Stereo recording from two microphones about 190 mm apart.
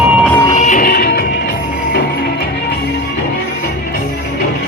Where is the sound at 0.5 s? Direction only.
40° left (ahead or behind).